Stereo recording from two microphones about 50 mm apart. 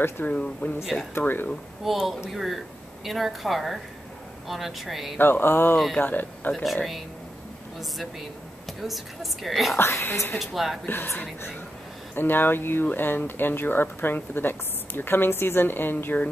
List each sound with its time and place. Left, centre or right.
0.2 s speech: left
1.1 s speech: left
1.9 s a woman's voice: centre
5.2 s speech: left
6.5 s a woman's voice: centre
8.8 s a woman's voice: centre
9.8 s speech: left
10.4 s a woman's voice: centre
10.9 s speech: left